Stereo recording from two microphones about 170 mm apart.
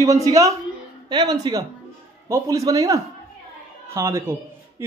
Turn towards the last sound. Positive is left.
turn(degrees=-15)  # may be behind; listen again after turning